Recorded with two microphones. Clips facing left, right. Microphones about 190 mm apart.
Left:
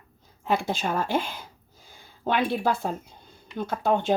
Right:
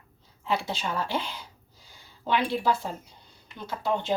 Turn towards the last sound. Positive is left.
turn(degrees=50)  # may be behind; listen again after turning